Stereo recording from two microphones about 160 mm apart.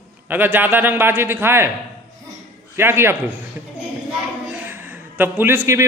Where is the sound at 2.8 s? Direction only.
15° right (ahead or behind).